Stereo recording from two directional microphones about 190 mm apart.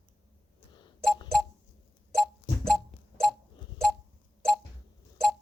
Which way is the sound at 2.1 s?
Centre (ahead or behind).